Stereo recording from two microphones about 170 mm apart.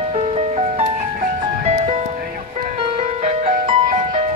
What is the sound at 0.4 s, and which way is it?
Music, 40° right (ahead or behind).